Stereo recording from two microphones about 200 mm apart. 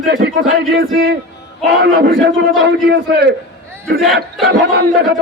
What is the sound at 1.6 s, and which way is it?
Speech, 55° right (ahead or behind).